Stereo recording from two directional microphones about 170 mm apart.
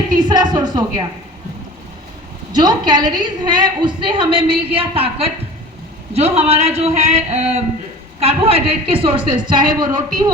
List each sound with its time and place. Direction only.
0.2 s a woman's voice: 25° right (ahead or behind)
2.5 s a woman's voice: 25° right (ahead or behind)